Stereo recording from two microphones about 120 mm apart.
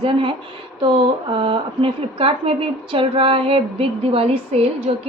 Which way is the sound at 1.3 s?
45° right (ahead or behind).